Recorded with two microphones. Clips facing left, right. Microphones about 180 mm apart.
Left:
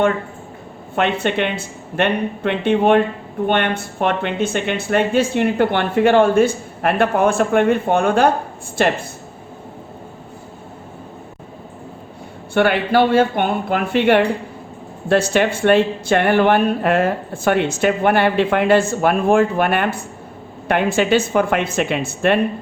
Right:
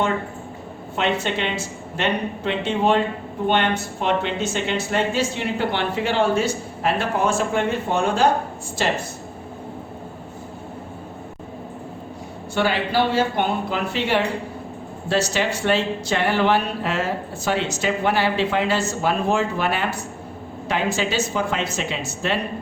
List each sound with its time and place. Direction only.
0.9 s speech: 55° left (ahead or behind)
12.5 s speech: 60° left (ahead or behind)